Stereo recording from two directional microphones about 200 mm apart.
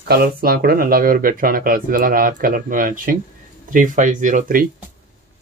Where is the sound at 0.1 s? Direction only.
50° right (ahead or behind).